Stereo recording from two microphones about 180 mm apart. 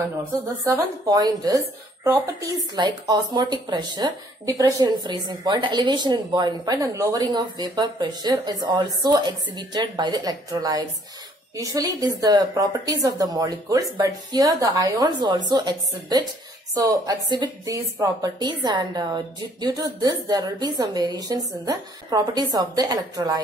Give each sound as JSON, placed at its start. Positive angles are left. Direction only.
{"t": 0.7, "sound": "speech", "side_deg": -20}